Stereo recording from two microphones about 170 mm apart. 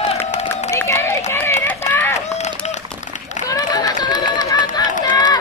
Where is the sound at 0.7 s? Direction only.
15° left (ahead or behind).